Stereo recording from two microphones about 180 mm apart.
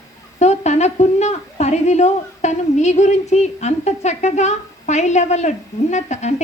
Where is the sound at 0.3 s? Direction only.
40° left (ahead or behind).